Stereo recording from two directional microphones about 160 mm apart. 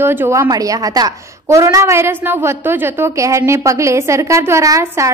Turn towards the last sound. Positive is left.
turn(degrees=-20)  # may be behind; listen again after turning